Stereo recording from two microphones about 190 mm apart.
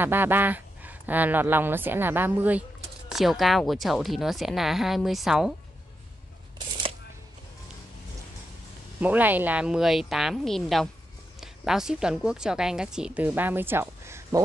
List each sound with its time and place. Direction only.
0.0 s a woman's voice: 10° right (ahead or behind)
9.0 s a woman's voice: 10° right (ahead or behind)